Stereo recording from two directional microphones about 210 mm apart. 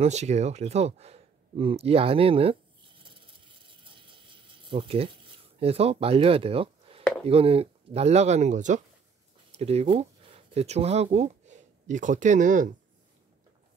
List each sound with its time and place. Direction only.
0.0 s speech: 30° right (ahead or behind)
3.0 s a sound: 25° right (ahead or behind)
7.2 s speech: 30° right (ahead or behind)